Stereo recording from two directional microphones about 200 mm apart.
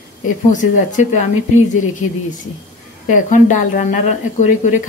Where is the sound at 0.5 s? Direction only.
40° left (ahead or behind).